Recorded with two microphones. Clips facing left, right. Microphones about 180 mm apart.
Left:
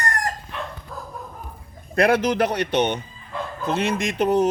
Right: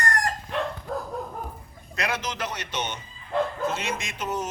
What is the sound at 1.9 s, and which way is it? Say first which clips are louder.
A man's voice: left 12 dB; 55° left (ahead or behind).